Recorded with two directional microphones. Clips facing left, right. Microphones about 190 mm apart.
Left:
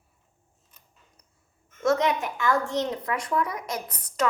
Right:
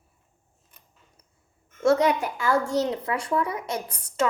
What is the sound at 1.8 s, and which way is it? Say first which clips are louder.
A woman's voice: right 3 dB; 30° right (ahead or behind).